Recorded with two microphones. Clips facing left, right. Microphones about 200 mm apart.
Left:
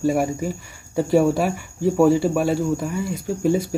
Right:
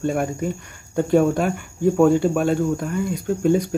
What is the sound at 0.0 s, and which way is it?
Speech, 5° left (ahead or behind).